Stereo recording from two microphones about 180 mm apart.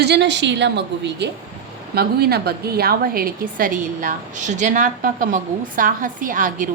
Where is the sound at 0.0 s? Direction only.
70° right (ahead or behind).